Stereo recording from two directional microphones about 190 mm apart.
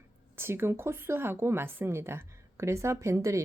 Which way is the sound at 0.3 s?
10° right (ahead or behind).